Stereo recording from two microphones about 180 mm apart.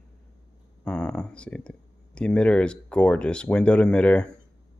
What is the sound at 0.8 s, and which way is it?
Speech, 5° left (ahead or behind).